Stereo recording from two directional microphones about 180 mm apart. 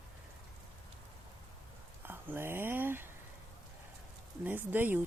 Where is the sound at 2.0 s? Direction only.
10° right (ahead or behind).